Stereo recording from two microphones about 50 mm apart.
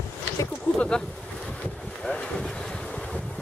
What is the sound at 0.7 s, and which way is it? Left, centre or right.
Speech, centre.